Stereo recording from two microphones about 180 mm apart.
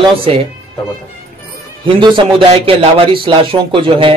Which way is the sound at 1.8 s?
30° right (ahead or behind).